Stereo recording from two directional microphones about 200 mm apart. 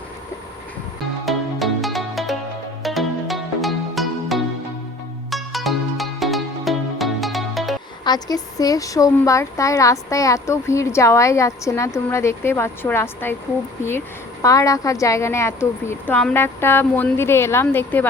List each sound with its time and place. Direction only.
1.2 s music: centre (ahead or behind)
8.0 s speech: 20° left (ahead or behind)
14.4 s speech: 15° left (ahead or behind)